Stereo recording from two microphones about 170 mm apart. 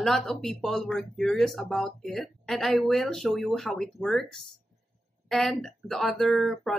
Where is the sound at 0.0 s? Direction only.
Centre (ahead or behind).